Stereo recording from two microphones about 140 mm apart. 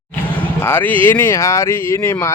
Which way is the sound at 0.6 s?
15° left (ahead or behind).